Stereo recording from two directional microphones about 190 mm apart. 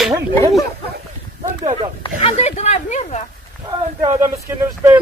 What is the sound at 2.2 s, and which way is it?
Speech, 35° left (ahead or behind).